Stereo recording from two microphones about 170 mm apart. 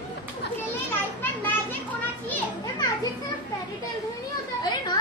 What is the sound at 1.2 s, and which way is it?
Children playing, 10° left (ahead or behind).